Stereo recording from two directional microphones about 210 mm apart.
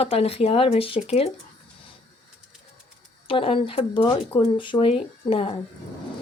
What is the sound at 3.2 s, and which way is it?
Speech, 25° left (ahead or behind).